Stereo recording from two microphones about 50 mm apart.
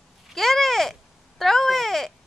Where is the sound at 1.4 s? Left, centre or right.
Centre.